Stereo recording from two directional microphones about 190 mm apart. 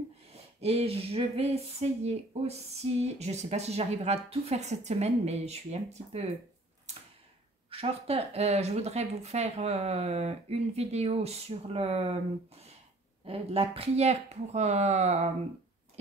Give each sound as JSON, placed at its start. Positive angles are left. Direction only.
{"t": 0.3, "sound": "speech", "side_deg": -35}
{"t": 6.9, "sound": "tick-tock", "side_deg": -35}
{"t": 7.7, "sound": "speech", "side_deg": -30}
{"t": 13.2, "sound": "speech", "side_deg": -30}